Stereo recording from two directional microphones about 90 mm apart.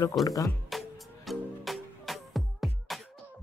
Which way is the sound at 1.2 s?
Centre (ahead or behind).